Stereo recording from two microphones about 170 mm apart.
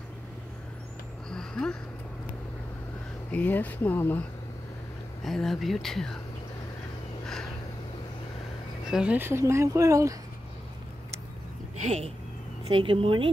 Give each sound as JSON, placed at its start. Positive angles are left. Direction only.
{"t": 1.3, "sound": "a sound", "side_deg": 5}
{"t": 3.3, "sound": "speech", "side_deg": 10}
{"t": 5.2, "sound": "speech", "side_deg": 0}
{"t": 8.8, "sound": "speech", "side_deg": -5}
{"t": 12.6, "sound": "speech", "side_deg": -30}